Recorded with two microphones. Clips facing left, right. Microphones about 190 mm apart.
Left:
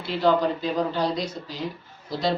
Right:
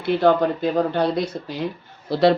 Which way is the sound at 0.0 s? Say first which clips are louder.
Right 4 dB; 55° right (ahead or behind).